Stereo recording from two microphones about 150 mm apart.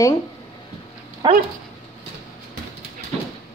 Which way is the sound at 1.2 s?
30° right (ahead or behind).